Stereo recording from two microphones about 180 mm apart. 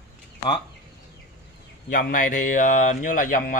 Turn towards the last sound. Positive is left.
turn(degrees=50)  # may be behind; listen again after turning